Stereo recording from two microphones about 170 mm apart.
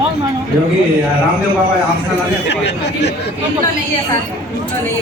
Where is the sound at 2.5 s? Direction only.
90° left.